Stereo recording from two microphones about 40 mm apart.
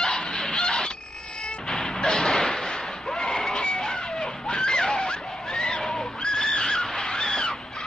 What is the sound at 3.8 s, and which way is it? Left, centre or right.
Screaming, centre.